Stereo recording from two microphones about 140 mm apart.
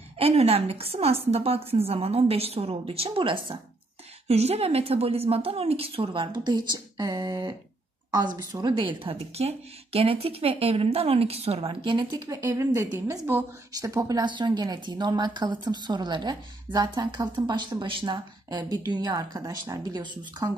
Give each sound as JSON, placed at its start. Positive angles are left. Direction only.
{"t": 0.2, "sound": "a woman's voice", "side_deg": -45}
{"t": 9.0, "sound": "speech", "side_deg": -45}
{"t": 12.4, "sound": "a woman's voice", "side_deg": -20}